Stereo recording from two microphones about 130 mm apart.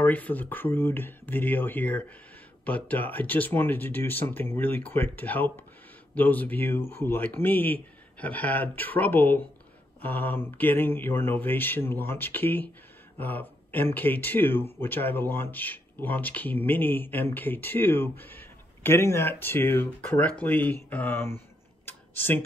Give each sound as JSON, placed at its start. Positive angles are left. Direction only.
{"t": 0.0, "sound": "speech", "side_deg": 10}
{"t": 21.8, "sound": "tick-tock", "side_deg": 15}